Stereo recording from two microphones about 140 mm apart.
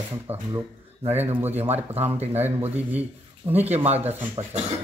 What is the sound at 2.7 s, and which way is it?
Speech, 10° right (ahead or behind).